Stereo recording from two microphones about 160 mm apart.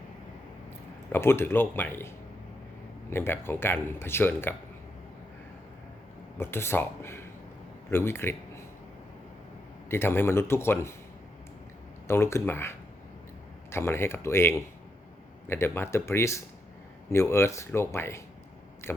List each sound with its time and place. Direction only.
1.1 s speech: 15° left (ahead or behind)
6.3 s speech: 15° left (ahead or behind)
9.9 s speech: 15° left (ahead or behind)
12.0 s speech: 15° left (ahead or behind)
18.8 s a sound: 15° left (ahead or behind)